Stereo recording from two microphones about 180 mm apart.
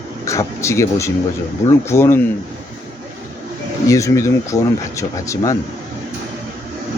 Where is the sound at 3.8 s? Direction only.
15° left (ahead or behind).